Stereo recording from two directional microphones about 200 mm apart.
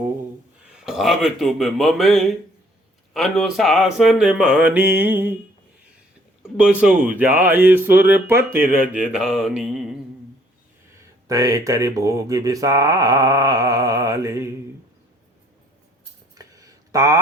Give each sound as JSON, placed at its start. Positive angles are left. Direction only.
{"t": 0.7, "sound": "a man's voice", "side_deg": -5}
{"t": 6.6, "sound": "speech", "side_deg": -5}
{"t": 11.3, "sound": "speech", "side_deg": -15}
{"t": 16.3, "sound": "a sound", "side_deg": -15}